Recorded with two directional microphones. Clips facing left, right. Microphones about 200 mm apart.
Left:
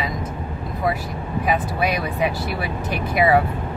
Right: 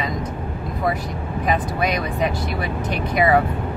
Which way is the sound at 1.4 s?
5° left (ahead or behind).